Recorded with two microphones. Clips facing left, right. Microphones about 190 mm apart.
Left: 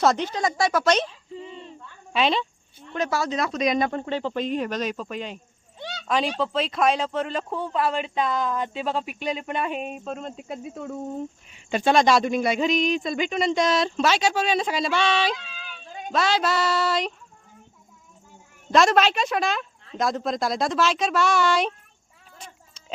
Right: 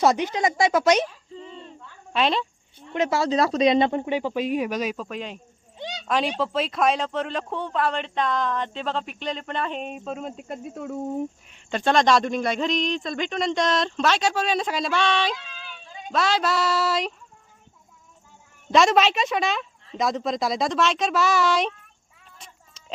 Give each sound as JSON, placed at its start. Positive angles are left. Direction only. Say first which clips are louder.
{"t": 0.0, "sound": "speech", "louder": "right 1 dB", "side_deg": -15}
{"t": 1.4, "sound": "a sound", "louder": "left 1 dB", "side_deg": 10}
{"t": 2.1, "sound": "speech", "louder": "even", "side_deg": 0}
{"t": 2.9, "sound": "speech", "louder": "right 3 dB", "side_deg": -25}
{"t": 5.7, "sound": "a sound", "louder": "right 2 dB", "side_deg": -15}
{"t": 6.1, "sound": "speech", "louder": "even", "side_deg": 0}
{"t": 18.7, "sound": "speech", "louder": "even", "side_deg": 0}
{"t": 22.4, "sound": "bleat", "louder": "left 5 dB", "side_deg": 0}